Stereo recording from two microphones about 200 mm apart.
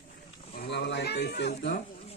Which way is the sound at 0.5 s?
50° left (ahead or behind).